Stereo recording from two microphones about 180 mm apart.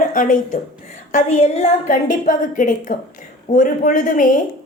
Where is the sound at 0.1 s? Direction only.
45° left (ahead or behind).